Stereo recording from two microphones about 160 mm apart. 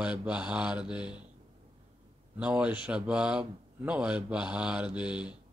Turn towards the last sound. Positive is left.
turn(degrees=-5)  # may be behind; listen again after turning